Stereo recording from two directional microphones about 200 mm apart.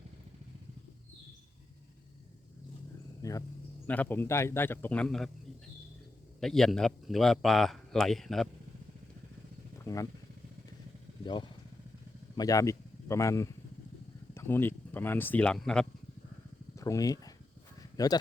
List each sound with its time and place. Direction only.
3.2 s a sound: 15° left (ahead or behind)
3.8 s a man's voice: 10° left (ahead or behind)
6.4 s speech: centre (ahead or behind)
9.7 s vehicle: 15° left (ahead or behind)
12.4 s speech: 15° left (ahead or behind)
16.7 s speech: 15° left (ahead or behind)
17.7 s a sound: 20° left (ahead or behind)